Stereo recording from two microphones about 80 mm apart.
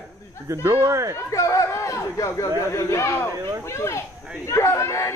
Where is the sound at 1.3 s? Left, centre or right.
Left.